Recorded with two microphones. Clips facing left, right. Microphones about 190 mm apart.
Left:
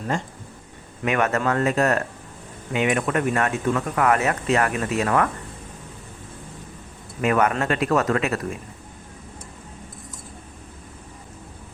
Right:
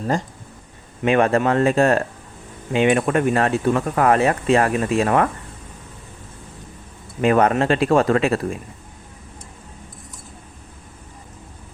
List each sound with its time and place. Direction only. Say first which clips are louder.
1.0 s speech: right 5 dB; 30° right (ahead or behind)
7.2 s speech: right 4 dB; 30° right (ahead or behind)